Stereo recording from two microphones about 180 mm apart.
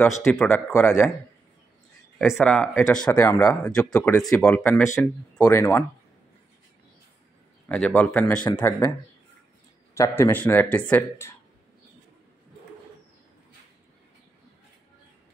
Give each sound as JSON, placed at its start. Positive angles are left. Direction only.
{"t": 0.2, "sound": "speech", "side_deg": 10}
{"t": 2.1, "sound": "speech", "side_deg": 0}
{"t": 4.5, "sound": "speech", "side_deg": 5}
{"t": 4.8, "sound": "speech", "side_deg": 15}
{"t": 7.6, "sound": "speech", "side_deg": 5}
{"t": 9.9, "sound": "speech", "side_deg": 15}